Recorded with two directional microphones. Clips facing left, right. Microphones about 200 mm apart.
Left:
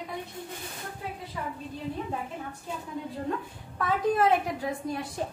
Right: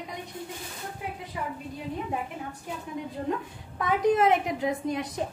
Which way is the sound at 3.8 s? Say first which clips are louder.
Right 2 dB; 20° right (ahead or behind).